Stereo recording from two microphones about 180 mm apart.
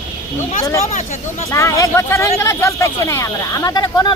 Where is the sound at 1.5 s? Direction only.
15° left (ahead or behind).